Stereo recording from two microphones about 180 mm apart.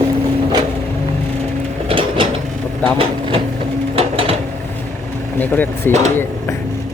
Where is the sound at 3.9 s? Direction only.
30° right (ahead or behind).